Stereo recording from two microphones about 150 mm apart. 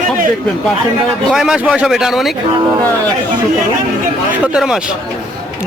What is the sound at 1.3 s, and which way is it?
A man's voice, 5° right (ahead or behind).